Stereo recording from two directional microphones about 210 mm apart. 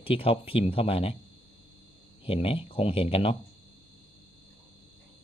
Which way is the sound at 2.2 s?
25° left (ahead or behind).